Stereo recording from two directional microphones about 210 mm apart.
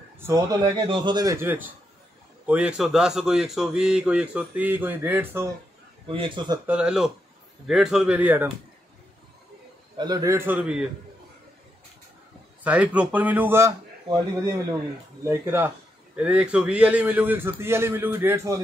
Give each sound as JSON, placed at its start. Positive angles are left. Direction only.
{"t": 0.2, "sound": "a man's voice", "side_deg": -15}
{"t": 6.0, "sound": "speech", "side_deg": -25}
{"t": 6.6, "sound": "speech", "side_deg": -5}
{"t": 9.9, "sound": "a man's voice", "side_deg": -20}
{"t": 12.6, "sound": "a man's voice", "side_deg": -5}
{"t": 15.2, "sound": "a man's voice", "side_deg": -10}